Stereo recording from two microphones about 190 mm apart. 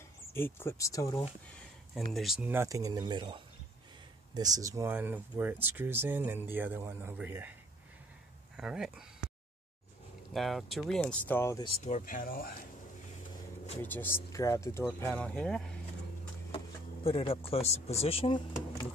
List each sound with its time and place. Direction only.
0.3 s speech: 10° left (ahead or behind)
2.1 s speech: centre (ahead or behind)
8.5 s speech: 5° right (ahead or behind)
10.3 s speech: centre (ahead or behind)
11.6 s speech: 35° left (ahead or behind)
13.8 s speech: 10° left (ahead or behind)
16.5 s speech: 30° left (ahead or behind)